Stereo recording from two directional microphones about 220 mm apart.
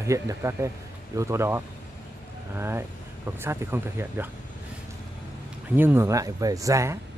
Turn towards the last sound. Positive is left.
turn(degrees=-15)  # may be behind; listen again after turning